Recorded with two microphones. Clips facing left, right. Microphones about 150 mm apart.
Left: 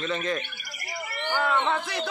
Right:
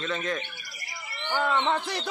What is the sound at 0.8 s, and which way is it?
Bird, 50° left (ahead or behind).